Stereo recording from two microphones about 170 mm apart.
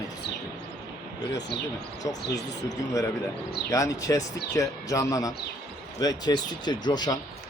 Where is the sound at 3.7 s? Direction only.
20° left (ahead or behind).